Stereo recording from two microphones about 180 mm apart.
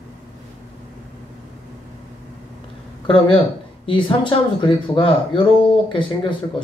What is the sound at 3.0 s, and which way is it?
Speech, 25° left (ahead or behind).